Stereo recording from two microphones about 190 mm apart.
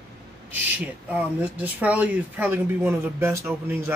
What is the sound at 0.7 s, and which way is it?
Speech, 10° right (ahead or behind).